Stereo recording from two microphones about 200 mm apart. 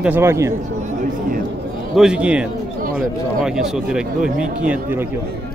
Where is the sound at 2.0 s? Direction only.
5° right (ahead or behind).